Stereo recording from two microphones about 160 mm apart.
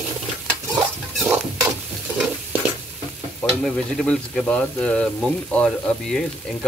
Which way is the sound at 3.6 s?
5° left (ahead or behind).